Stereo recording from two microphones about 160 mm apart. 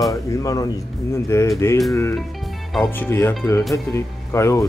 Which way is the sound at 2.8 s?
15° left (ahead or behind).